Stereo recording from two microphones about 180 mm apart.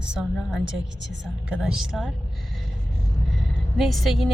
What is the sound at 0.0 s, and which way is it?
A woman's voice, 5° right (ahead or behind).